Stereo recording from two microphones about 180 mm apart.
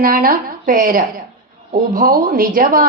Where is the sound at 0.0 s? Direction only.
50° right (ahead or behind).